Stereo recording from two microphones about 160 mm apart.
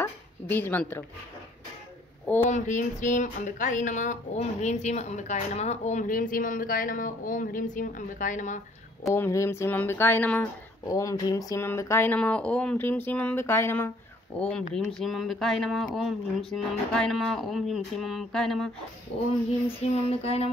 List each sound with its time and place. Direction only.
0.0 s speech: 10° left (ahead or behind)
2.5 s speech: 50° left (ahead or behind)
9.1 s speech: 15° left (ahead or behind)
10.9 s speech: 20° left (ahead or behind)
14.7 s speech: centre (ahead or behind)
20.1 s a sound: 40° left (ahead or behind)